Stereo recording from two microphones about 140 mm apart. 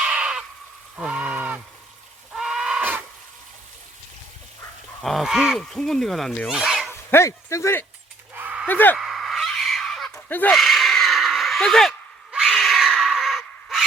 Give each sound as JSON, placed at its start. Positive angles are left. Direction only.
{"t": 0.0, "sound": "crow", "side_deg": -5}
{"t": 0.9, "sound": "sheep", "side_deg": -5}
{"t": 2.3, "sound": "wild animals", "side_deg": 0}
{"t": 5.0, "sound": "speech", "side_deg": 0}
{"t": 6.5, "sound": "dog", "side_deg": -5}
{"t": 7.1, "sound": "speech", "side_deg": 20}
{"t": 8.4, "sound": "a sound", "side_deg": -10}
{"t": 8.6, "sound": "speech", "side_deg": 15}
{"t": 9.0, "sound": "a sound", "side_deg": 0}
{"t": 10.2, "sound": "speech", "side_deg": 15}
{"t": 10.5, "sound": "a sound", "side_deg": 0}